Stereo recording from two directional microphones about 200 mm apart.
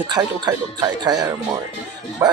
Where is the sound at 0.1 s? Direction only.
20° right (ahead or behind).